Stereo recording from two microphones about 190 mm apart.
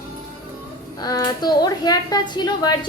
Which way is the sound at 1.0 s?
20° left (ahead or behind).